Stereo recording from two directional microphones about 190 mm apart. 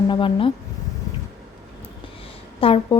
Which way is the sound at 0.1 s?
25° left (ahead or behind).